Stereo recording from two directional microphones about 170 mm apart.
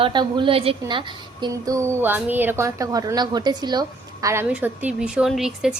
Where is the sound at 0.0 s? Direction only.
25° right (ahead or behind).